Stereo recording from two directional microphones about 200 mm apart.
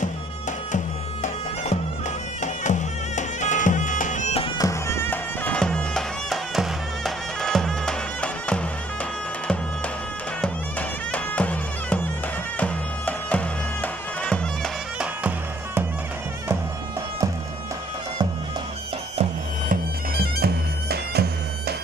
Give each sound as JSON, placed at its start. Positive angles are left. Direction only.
{"t": 0.0, "sound": "music", "side_deg": 40}
{"t": 4.6, "sound": "bagpipes", "side_deg": 15}
{"t": 10.4, "sound": "bagpipes", "side_deg": 5}
{"t": 12.5, "sound": "music", "side_deg": 5}
{"t": 19.7, "sound": "bagpipes", "side_deg": -50}